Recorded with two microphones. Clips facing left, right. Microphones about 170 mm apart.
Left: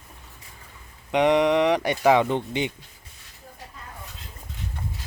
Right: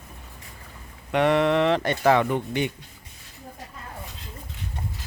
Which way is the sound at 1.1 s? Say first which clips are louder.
Left 1 dB; 15° left (ahead or behind).